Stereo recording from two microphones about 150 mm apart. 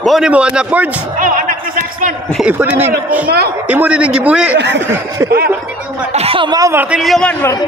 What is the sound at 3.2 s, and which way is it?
Speech, 90° right.